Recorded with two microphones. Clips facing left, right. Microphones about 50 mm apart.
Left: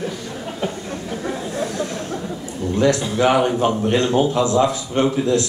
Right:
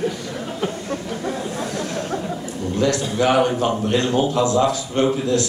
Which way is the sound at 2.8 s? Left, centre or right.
Left.